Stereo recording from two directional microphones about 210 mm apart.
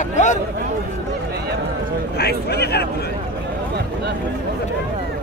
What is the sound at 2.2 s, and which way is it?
Speech, 50° left (ahead or behind).